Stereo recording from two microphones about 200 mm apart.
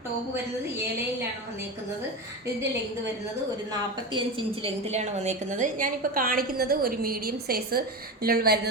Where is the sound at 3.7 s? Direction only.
25° right (ahead or behind).